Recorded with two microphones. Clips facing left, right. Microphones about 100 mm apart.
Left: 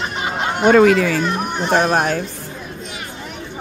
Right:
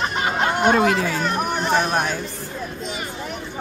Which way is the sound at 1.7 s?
60° left (ahead or behind).